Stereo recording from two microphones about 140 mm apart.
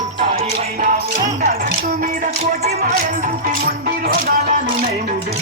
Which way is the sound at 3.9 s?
90° right.